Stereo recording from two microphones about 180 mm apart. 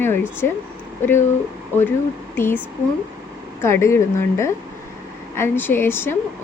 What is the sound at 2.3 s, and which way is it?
Speech, 10° left (ahead or behind).